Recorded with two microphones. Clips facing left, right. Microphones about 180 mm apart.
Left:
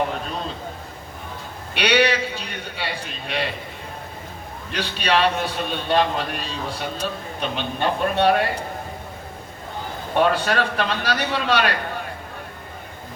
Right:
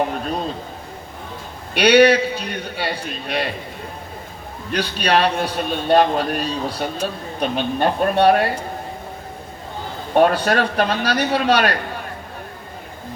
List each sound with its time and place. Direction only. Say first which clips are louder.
1.7 s a man's voice: right 7 dB; 40° right (ahead or behind)
4.7 s a man's voice: right 3 dB; 40° right (ahead or behind)
10.2 s a man's voice: right 4 dB; 40° right (ahead or behind)